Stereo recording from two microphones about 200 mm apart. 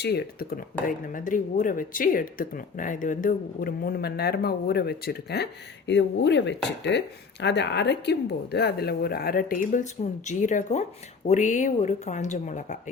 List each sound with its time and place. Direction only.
0.0 s speech: 50° left (ahead or behind)